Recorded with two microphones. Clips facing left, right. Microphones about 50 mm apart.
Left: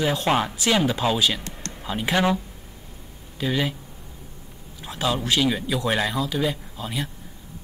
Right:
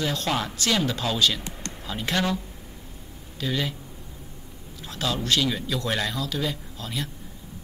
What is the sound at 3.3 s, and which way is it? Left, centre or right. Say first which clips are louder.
Speech: left 3 dB; centre.